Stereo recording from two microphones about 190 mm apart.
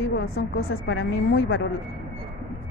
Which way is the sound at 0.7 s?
90° left.